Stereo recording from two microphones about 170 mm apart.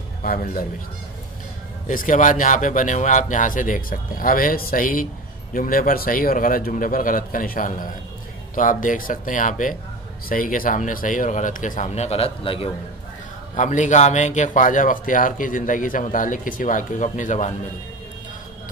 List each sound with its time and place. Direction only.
0.2 s speech: 55° left (ahead or behind)
1.9 s a man's voice: 50° left (ahead or behind)
13.6 s a man's voice: 45° left (ahead or behind)